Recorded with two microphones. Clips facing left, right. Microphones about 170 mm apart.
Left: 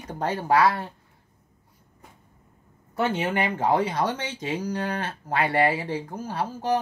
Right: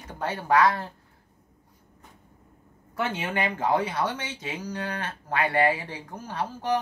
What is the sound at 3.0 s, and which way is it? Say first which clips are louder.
Speech: left 4 dB; 35° left (ahead or behind).